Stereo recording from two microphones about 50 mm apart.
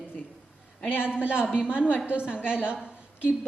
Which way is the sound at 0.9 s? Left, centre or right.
Left.